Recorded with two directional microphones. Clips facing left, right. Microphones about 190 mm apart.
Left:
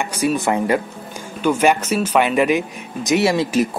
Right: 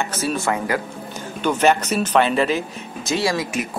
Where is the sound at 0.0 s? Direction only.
15° left (ahead or behind).